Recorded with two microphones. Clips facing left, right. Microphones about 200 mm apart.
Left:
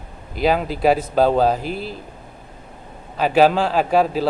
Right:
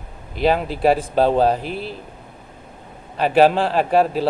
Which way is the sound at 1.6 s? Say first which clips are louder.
Left 1 dB; 40° left (ahead or behind).